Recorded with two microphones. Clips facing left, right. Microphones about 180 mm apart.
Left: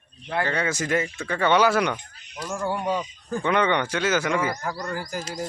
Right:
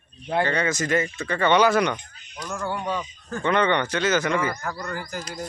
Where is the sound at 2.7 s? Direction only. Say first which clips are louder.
Left 3 dB; 15° left (ahead or behind).